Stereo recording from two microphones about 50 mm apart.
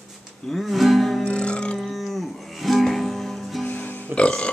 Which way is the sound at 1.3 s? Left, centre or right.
Centre.